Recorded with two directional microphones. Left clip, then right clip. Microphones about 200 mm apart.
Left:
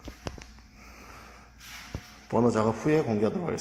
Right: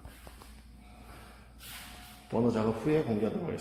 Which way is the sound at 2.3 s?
25° left (ahead or behind).